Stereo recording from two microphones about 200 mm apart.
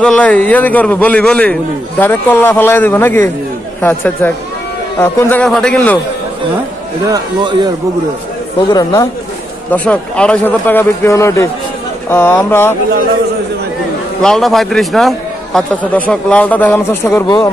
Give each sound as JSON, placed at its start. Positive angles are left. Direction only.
{"t": 0.0, "sound": "a man's voice", "side_deg": 5}
{"t": 8.6, "sound": "a man's voice", "side_deg": 20}
{"t": 9.7, "sound": "a man's voice", "side_deg": 5}
{"t": 14.2, "sound": "a man's voice", "side_deg": 0}